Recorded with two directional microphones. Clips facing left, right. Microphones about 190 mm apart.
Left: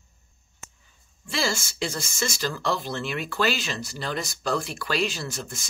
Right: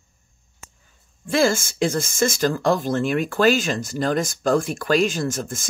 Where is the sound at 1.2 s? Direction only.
50° right (ahead or behind).